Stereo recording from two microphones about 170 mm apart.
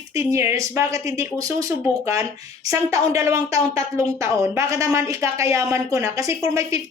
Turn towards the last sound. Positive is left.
turn(degrees=-20)  # may be behind; listen again after turning